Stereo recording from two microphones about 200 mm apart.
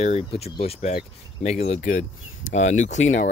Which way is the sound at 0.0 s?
30° left (ahead or behind).